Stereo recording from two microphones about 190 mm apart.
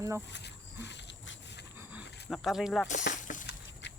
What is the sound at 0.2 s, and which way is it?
Speech, 65° left (ahead or behind).